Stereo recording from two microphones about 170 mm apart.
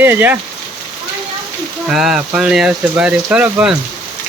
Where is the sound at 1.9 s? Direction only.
5° right (ahead or behind).